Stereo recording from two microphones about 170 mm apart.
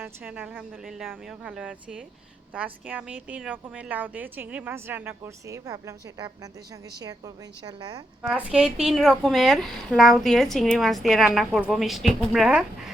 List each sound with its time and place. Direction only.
0.0 s a woman's voice: 10° right (ahead or behind)
8.2 s a woman's voice: 5° right (ahead or behind)